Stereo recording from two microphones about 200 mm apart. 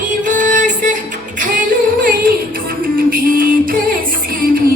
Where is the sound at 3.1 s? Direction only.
45° right (ahead or behind).